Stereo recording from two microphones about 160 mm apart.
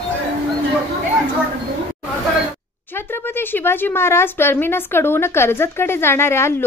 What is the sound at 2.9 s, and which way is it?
Speech, 15° left (ahead or behind).